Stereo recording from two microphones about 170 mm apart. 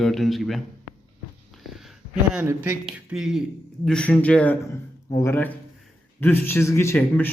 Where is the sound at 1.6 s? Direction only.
Centre (ahead or behind).